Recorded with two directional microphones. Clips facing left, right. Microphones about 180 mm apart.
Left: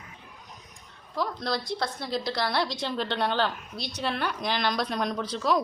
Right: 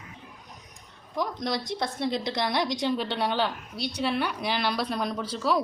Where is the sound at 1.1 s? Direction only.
15° right (ahead or behind).